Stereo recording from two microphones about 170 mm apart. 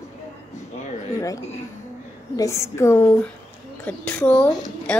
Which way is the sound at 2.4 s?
15° left (ahead or behind).